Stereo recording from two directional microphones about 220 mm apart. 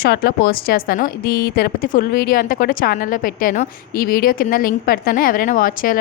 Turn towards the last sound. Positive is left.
turn(degrees=40)  # may be behind; listen again after turning